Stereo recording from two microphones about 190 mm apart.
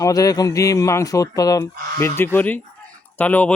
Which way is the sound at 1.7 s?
50° right (ahead or behind).